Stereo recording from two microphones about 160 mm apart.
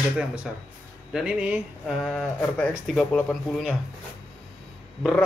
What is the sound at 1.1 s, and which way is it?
Speech, 5° right (ahead or behind).